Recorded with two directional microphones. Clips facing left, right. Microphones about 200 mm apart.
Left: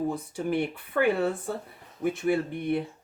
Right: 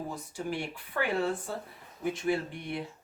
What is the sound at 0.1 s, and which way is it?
Speech, 55° left (ahead or behind).